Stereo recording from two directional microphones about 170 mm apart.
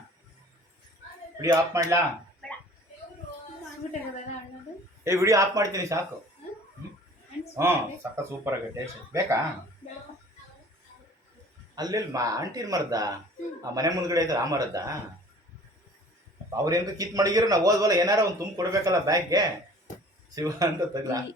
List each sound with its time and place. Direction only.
1.4 s speech: 15° right (ahead or behind)
5.0 s speech: 15° right (ahead or behind)
7.5 s speech: 15° right (ahead or behind)
11.7 s a man's voice: 25° right (ahead or behind)
16.5 s a man's voice: 20° right (ahead or behind)